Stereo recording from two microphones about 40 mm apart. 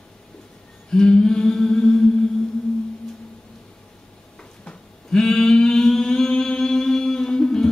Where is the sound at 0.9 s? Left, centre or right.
Centre.